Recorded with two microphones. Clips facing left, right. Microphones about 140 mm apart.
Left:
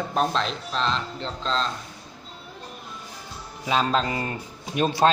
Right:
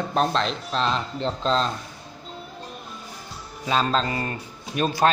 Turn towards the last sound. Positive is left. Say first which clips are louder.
# left 1 dB
turn(degrees=20)  # may be behind; listen again after turning